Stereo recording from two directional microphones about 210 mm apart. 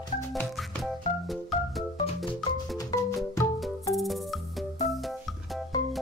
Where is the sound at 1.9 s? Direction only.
25° left (ahead or behind).